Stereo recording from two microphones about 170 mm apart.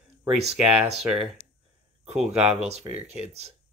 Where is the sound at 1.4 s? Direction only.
40° left (ahead or behind).